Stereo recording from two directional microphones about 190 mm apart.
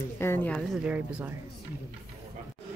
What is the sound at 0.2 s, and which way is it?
Speech, 10° left (ahead or behind).